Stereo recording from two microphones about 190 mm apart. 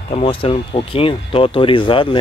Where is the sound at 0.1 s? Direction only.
30° left (ahead or behind).